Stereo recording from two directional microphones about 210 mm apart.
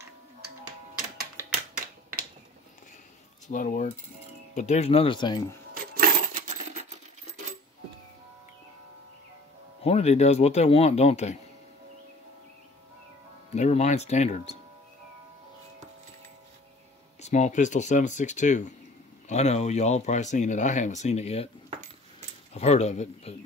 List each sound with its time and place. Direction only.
3.4 s speech: 40° left (ahead or behind); by 5.6 s 20° left (ahead or behind)
5.9 s coin: 40° right (ahead or behind)
9.8 s speech: 30° left (ahead or behind)
13.6 s speech: 35° left (ahead or behind)
17.2 s speech: 35° left (ahead or behind)
22.5 s speech: 30° left (ahead or behind)